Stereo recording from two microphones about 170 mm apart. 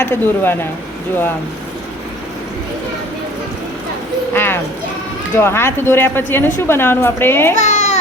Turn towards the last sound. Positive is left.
turn(degrees=40)  # may be behind; listen again after turning